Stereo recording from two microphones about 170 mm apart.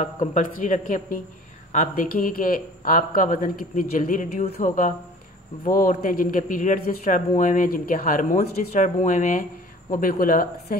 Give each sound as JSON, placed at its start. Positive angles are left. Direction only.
{"t": 0.0, "sound": "speech", "side_deg": 45}